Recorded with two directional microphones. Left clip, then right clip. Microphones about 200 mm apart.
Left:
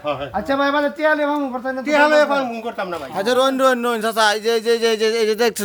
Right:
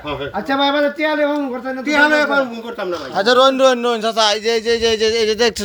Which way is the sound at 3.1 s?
5° left (ahead or behind).